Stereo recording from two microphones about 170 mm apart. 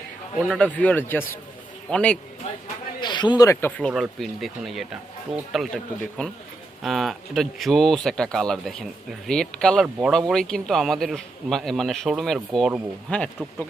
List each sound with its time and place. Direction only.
0.4 s speech: 5° left (ahead or behind)
3.0 s a man's voice: 25° left (ahead or behind)
3.8 s speech: centre (ahead or behind)